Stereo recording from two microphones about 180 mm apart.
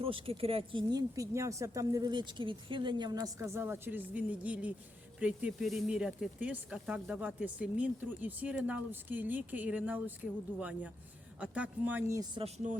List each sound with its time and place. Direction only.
0.0 s speech: 30° right (ahead or behind); by 10.0 s 10° right (ahead or behind)
11.3 s speech: 5° right (ahead or behind)
12.6 s speech: 45° right (ahead or behind)